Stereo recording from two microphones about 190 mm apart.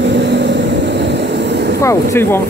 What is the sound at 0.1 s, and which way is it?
Vehicle, 65° right (ahead or behind).